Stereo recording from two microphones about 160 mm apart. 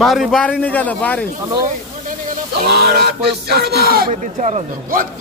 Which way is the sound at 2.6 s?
75° right (ahead or behind).